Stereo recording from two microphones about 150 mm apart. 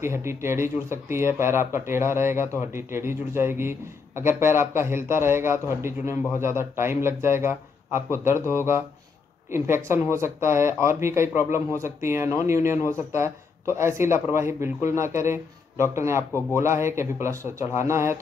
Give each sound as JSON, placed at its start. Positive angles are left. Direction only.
{"t": 0.0, "sound": "a man's voice", "side_deg": -15}